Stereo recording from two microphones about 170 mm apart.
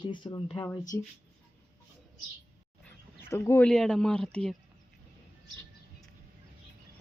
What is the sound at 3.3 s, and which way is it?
Speech, 15° left (ahead or behind).